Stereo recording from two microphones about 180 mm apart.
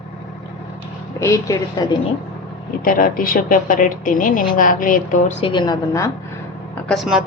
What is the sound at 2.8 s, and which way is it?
A woman's voice, 50° left (ahead or behind).